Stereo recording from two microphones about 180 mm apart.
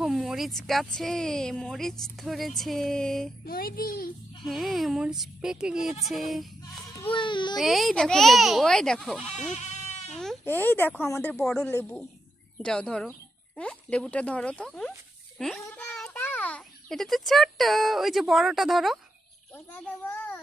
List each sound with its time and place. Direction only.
0.0 s speech: centre (ahead or behind)
3.4 s a child's voice: 55° left (ahead or behind)
4.5 s speech: centre (ahead or behind)
7.1 s speech: 25° left (ahead or behind)
7.5 s speech: centre (ahead or behind)
9.5 s goat: 40° left (ahead or behind)
10.4 s a child's voice: 10° left (ahead or behind)